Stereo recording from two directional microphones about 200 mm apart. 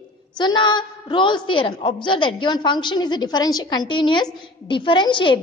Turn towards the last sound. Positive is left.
turn(degrees=25)  # may be behind; listen again after turning